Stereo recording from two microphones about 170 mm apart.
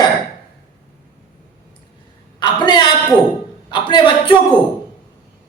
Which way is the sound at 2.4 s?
25° left (ahead or behind).